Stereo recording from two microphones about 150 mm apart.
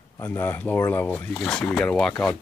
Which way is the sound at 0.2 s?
15° left (ahead or behind).